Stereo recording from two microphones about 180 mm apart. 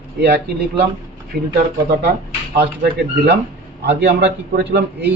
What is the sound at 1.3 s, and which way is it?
Speech, 60° right (ahead or behind).